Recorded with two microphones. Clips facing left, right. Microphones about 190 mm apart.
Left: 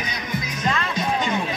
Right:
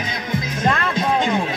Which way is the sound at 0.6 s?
55° right (ahead or behind).